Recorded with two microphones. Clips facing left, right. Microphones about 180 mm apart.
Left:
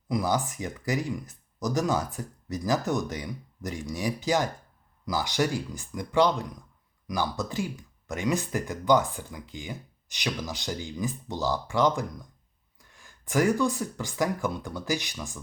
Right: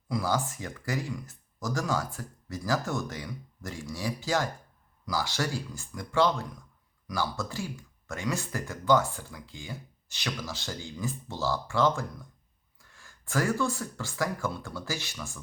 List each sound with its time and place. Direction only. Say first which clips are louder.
0.1 s speech: left 2 dB; 15° left (ahead or behind)